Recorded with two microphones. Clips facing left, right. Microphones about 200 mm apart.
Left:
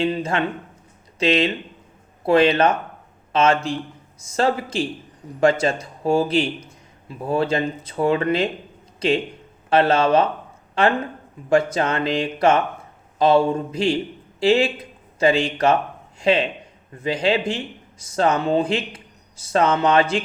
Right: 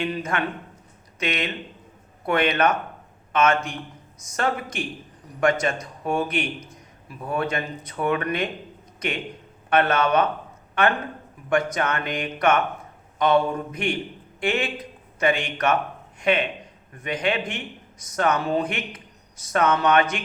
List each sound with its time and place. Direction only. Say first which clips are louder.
0.0 s a man's voice: left 4 dB; 25° left (ahead or behind)